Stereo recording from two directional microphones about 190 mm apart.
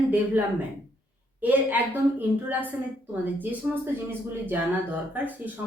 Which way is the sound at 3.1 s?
10° right (ahead or behind).